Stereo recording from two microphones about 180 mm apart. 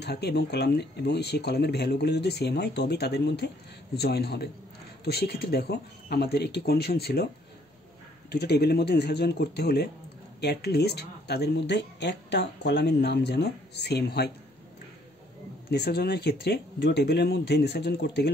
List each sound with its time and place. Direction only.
0.0 s speech: 65° left (ahead or behind)
8.3 s speech: 65° left (ahead or behind)
15.7 s speech: 65° left (ahead or behind)